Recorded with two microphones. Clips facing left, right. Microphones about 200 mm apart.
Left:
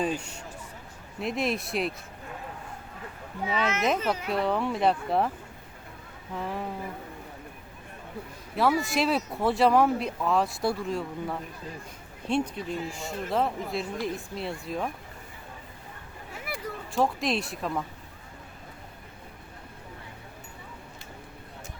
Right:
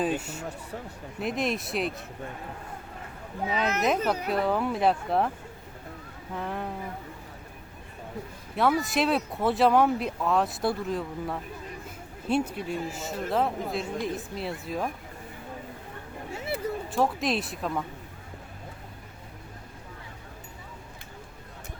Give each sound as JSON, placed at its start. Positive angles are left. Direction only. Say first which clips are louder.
{"t": 1.2, "sound": "speech", "louder": "even", "side_deg": 0}
{"t": 3.5, "sound": "speech", "louder": "right 1 dB", "side_deg": 0}
{"t": 6.3, "sound": "speech", "louder": "even", "side_deg": 0}
{"t": 8.5, "sound": "speech", "louder": "even", "side_deg": 0}
{"t": 16.3, "sound": "a sound", "louder": "right 5 dB", "side_deg": -25}
{"t": 16.9, "sound": "speech", "louder": "left 1 dB", "side_deg": 0}